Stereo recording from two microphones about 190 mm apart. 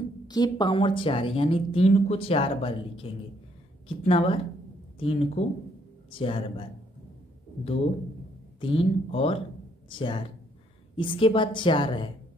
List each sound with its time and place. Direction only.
0.3 s speech: 20° left (ahead or behind)
8.5 s speech: 30° left (ahead or behind)